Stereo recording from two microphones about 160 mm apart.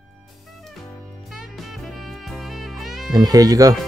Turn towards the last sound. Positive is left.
turn(degrees=-20)  # may be behind; listen again after turning